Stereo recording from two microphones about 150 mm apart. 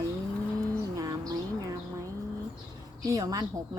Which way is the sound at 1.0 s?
25° right (ahead or behind).